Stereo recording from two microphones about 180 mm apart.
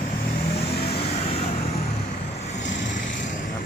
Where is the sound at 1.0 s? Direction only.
35° left (ahead or behind).